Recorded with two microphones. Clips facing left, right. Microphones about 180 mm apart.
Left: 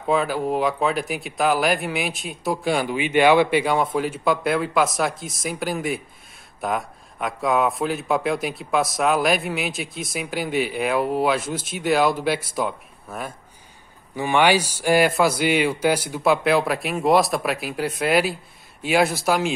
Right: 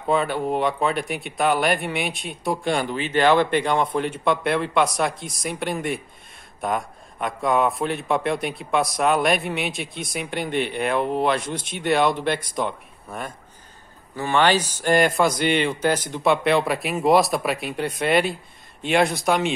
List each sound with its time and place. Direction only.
0.0 s speech: centre (ahead or behind)